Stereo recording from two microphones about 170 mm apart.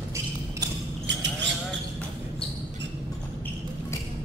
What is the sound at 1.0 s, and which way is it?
Livestock, 90° right.